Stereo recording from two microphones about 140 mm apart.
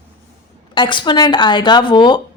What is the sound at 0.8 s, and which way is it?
Speech, 35° left (ahead or behind).